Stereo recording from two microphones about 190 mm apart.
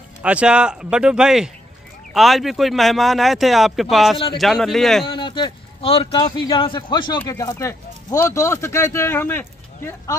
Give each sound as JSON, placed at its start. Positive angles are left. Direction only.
{"t": 0.2, "sound": "speech", "side_deg": -5}
{"t": 5.0, "sound": "speech", "side_deg": 25}